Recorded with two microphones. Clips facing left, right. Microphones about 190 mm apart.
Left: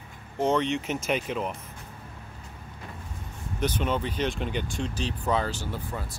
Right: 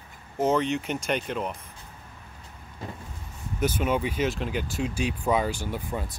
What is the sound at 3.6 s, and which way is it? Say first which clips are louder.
Speech: right 2 dB; 10° right (ahead or behind).